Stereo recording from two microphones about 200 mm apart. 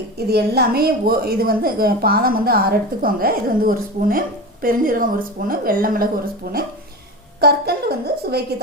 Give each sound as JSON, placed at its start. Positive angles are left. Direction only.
{"t": 0.3, "sound": "a woman's voice", "side_deg": -55}